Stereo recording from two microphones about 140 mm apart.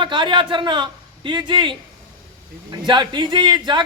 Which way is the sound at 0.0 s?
35° right (ahead or behind).